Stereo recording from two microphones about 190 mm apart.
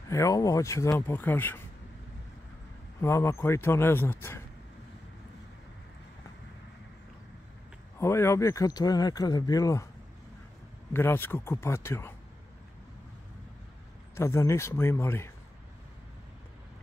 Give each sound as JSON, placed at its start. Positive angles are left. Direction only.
{"t": 0.1, "sound": "a man's voice", "side_deg": 15}
{"t": 3.0, "sound": "a man's voice", "side_deg": 15}
{"t": 8.0, "sound": "speech", "side_deg": 15}
{"t": 10.9, "sound": "a man's voice", "side_deg": 10}
{"t": 14.1, "sound": "a man's voice", "side_deg": 15}